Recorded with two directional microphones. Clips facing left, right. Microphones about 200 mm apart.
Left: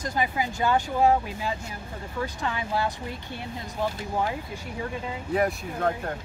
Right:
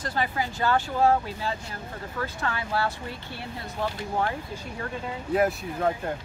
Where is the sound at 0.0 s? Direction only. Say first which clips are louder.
Left 1 dB; 15° left (ahead or behind).